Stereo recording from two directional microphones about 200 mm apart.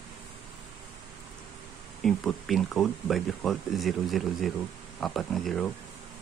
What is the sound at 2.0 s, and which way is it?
Speech, centre (ahead or behind).